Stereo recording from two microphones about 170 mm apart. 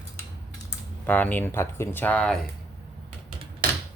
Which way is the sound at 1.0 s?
10° left (ahead or behind).